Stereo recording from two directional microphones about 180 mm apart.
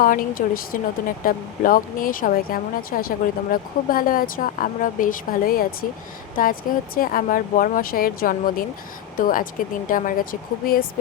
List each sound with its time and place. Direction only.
0.0 s speech: 50° left (ahead or behind)